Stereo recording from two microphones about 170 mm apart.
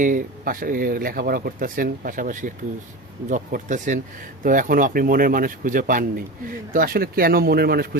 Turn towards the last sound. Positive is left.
turn(degrees=-65)  # may be behind; listen again after turning